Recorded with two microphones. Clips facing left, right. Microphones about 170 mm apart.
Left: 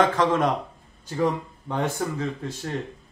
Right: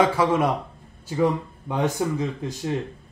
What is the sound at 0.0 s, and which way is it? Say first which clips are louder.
Speech: right 1 dB; 10° right (ahead or behind).